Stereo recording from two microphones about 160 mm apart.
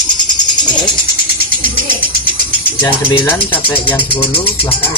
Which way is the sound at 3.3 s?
10° left (ahead or behind).